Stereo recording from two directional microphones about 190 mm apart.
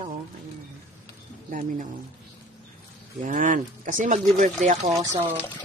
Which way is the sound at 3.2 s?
45° right (ahead or behind).